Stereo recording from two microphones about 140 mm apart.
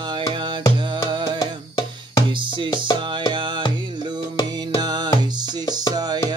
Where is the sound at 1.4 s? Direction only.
30° left (ahead or behind).